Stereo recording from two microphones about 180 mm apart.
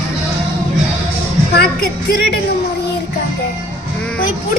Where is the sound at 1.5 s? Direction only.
60° left (ahead or behind).